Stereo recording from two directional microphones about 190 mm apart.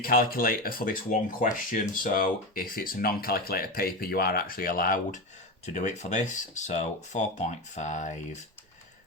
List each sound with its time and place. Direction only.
0.0 s speech: 50° left (ahead or behind)